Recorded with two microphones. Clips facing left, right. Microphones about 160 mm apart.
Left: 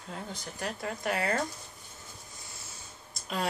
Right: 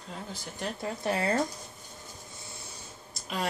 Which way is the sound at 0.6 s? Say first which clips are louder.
Right 2 dB; 25° right (ahead or behind).